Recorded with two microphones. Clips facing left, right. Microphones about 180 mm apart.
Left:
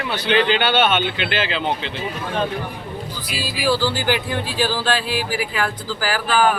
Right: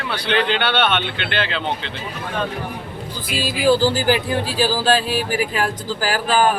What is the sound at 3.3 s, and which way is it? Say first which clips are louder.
Speech: right 5 dB; 45° right (ahead or behind).